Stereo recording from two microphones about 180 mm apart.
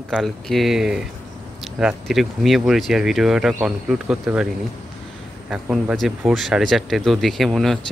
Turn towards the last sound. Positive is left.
turn(degrees=0)  # may be behind; listen again after turning